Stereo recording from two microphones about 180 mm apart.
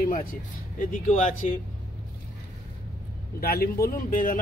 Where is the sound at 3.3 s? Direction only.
55° left (ahead or behind).